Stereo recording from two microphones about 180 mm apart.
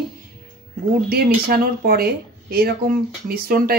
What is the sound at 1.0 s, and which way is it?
Speech, 55° right (ahead or behind).